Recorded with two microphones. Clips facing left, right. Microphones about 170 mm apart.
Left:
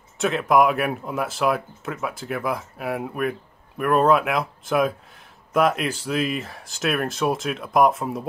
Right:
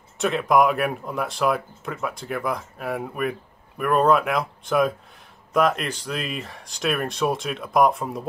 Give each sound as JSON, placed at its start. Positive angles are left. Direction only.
{"t": 0.2, "sound": "speech", "side_deg": 0}